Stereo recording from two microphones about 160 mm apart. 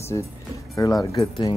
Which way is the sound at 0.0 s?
20° left (ahead or behind).